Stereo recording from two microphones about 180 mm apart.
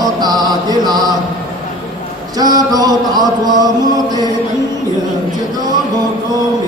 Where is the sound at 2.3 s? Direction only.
20° right (ahead or behind).